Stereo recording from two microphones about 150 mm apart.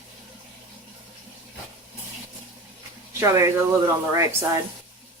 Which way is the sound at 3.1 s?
20° right (ahead or behind).